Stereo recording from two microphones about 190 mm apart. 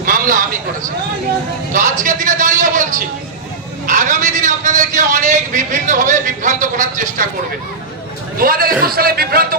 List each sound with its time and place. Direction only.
0.0 s a sound: 45° right (ahead or behind)
1.7 s a man's voice: 45° right (ahead or behind)
8.4 s a man's voice: 50° right (ahead or behind)